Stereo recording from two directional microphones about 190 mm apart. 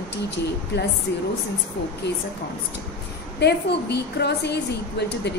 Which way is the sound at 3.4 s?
60° left (ahead or behind).